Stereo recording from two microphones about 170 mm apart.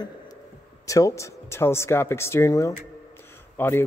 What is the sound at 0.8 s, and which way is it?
Speech, 20° left (ahead or behind).